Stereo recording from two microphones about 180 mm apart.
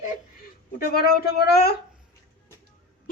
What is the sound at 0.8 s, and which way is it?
Speech, 60° left (ahead or behind).